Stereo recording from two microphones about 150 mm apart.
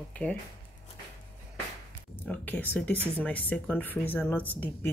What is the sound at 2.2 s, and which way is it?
A woman's voice, 10° left (ahead or behind).